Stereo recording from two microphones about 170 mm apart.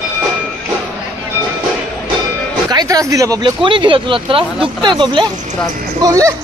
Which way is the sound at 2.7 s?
20° right (ahead or behind).